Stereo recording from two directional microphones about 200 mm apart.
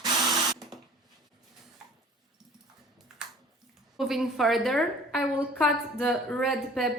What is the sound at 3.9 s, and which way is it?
A woman's voice, centre (ahead or behind).